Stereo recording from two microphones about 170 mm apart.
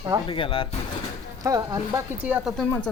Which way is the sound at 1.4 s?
20° right (ahead or behind).